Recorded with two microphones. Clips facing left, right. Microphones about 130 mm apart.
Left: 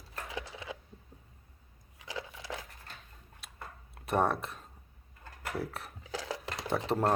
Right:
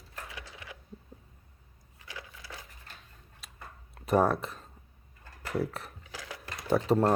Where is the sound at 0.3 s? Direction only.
25° left (ahead or behind).